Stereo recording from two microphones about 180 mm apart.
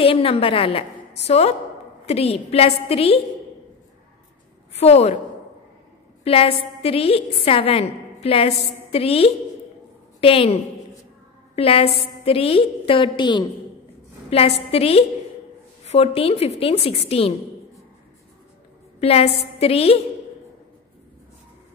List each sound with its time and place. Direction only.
0.0 s a woman's voice: 30° left (ahead or behind)
4.7 s a woman's voice: 35° left (ahead or behind)
6.2 s a woman's voice: 30° left (ahead or behind)
18.9 s a woman's voice: 35° left (ahead or behind)